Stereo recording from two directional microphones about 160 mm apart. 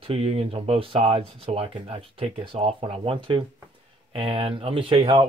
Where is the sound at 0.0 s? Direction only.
40° right (ahead or behind).